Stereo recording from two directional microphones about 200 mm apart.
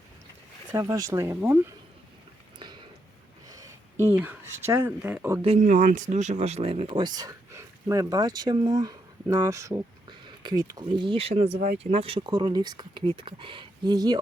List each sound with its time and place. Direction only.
0.7 s speech: 15° right (ahead or behind)
2.6 s a sound: 20° right (ahead or behind)
4.1 s speech: 10° right (ahead or behind)
5.4 s speech: 30° right (ahead or behind)
5.6 s speech: 45° right (ahead or behind); by 14.2 s 20° right (ahead or behind)